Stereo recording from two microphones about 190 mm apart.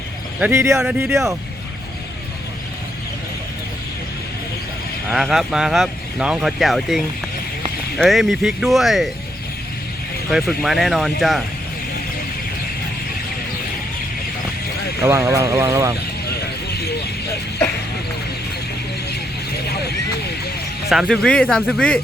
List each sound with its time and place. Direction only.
0.3 s speech: 10° right (ahead or behind)
5.1 s speech: centre (ahead or behind)
10.2 s speech: centre (ahead or behind)
15.0 s speech: 15° right (ahead or behind)
20.9 s speech: centre (ahead or behind)